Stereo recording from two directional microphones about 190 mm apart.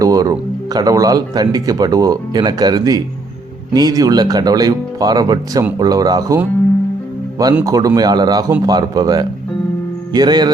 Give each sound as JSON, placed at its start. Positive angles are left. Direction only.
{"t": 0.0, "sound": "speech", "side_deg": -20}
{"t": 7.6, "sound": "speech", "side_deg": -20}
{"t": 10.1, "sound": "mantra", "side_deg": -20}